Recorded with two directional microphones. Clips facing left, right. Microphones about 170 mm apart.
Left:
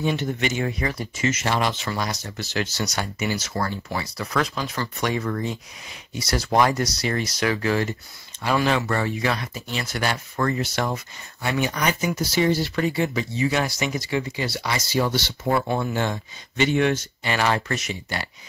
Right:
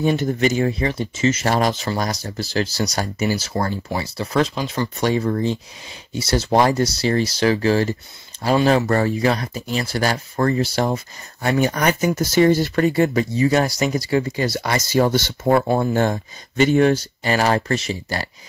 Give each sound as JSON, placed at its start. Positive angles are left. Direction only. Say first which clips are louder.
{"t": 0.0, "sound": "speech", "louder": "right 6 dB", "side_deg": -40}
{"t": 11.4, "sound": "speech", "louder": "right 5 dB", "side_deg": -45}